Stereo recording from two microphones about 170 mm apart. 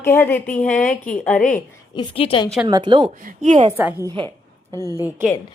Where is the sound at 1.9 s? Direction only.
30° left (ahead or behind).